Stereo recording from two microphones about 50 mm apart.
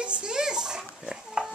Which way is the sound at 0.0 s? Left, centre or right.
Centre.